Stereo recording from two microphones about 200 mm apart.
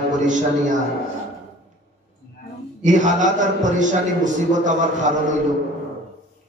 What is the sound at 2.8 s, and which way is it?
A man's voice, 40° right (ahead or behind).